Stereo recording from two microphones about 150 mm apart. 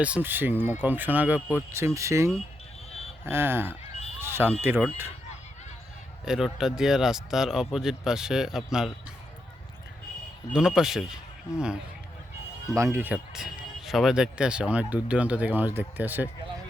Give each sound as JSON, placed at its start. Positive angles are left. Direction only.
{"t": 0.0, "sound": "speech", "side_deg": -10}
{"t": 4.2, "sound": "smoke detector", "side_deg": -15}
{"t": 4.6, "sound": "speech", "side_deg": -15}
{"t": 6.2, "sound": "speech", "side_deg": -5}
{"t": 10.5, "sound": "speech", "side_deg": -5}
{"t": 12.7, "sound": "speech", "side_deg": -20}
{"t": 13.3, "sound": "speech", "side_deg": -5}